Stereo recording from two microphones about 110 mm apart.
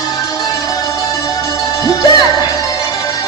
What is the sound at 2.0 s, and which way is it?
Music, 35° left (ahead or behind).